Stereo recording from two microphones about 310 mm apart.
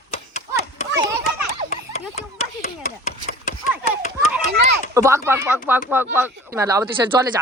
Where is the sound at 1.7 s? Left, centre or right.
Left.